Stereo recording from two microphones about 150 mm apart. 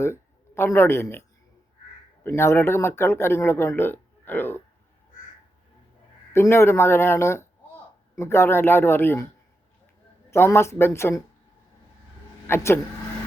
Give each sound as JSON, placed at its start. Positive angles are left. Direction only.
{"t": 0.0, "sound": "speech", "side_deg": 15}
{"t": 2.2, "sound": "speech", "side_deg": 15}
{"t": 6.3, "sound": "speech", "side_deg": 15}
{"t": 10.3, "sound": "speech", "side_deg": 15}
{"t": 12.5, "sound": "speech", "side_deg": 15}